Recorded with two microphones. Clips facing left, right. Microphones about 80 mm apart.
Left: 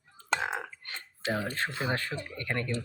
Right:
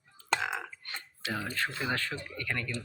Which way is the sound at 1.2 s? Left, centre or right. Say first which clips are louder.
Left 3 dB; left.